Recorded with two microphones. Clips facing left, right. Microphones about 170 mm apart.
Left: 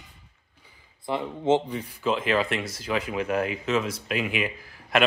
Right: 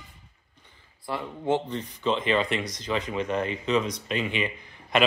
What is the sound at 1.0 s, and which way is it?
Speech, 20° left (ahead or behind).